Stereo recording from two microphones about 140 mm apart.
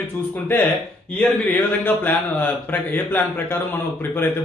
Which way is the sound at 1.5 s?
15° left (ahead or behind).